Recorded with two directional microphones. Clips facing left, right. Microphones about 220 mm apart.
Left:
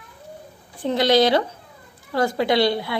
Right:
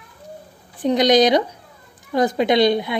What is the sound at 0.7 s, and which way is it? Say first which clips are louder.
A woman's voice: right 3 dB; 15° right (ahead or behind).